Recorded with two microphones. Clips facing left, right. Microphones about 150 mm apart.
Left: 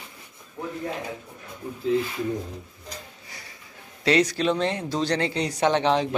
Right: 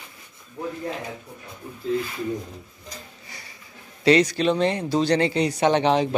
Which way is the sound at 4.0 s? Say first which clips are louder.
Right 3 dB; centre (ahead or behind).